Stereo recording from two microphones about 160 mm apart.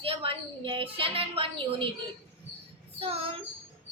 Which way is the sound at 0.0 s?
35° right (ahead or behind).